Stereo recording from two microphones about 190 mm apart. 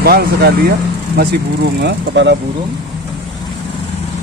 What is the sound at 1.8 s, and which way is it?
Speech, 65° right (ahead or behind).